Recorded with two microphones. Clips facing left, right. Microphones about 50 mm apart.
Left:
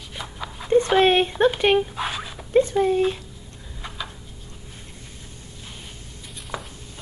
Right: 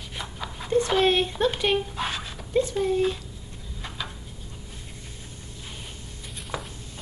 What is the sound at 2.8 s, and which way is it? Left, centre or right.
Speech, centre.